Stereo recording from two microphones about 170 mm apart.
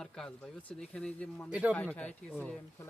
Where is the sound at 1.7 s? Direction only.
10° left (ahead or behind).